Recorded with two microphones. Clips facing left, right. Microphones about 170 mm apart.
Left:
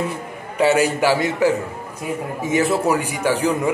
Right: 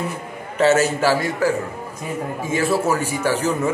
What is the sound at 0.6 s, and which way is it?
A man's voice, 15° left (ahead or behind).